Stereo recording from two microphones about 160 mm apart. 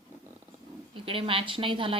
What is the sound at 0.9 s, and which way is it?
A woman's voice, 35° right (ahead or behind).